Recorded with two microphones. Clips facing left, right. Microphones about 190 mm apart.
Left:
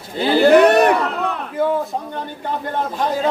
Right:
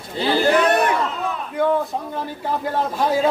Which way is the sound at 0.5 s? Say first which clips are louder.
Left 6 dB; 60° left (ahead or behind).